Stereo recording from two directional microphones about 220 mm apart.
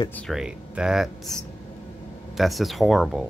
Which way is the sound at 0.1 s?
Centre (ahead or behind).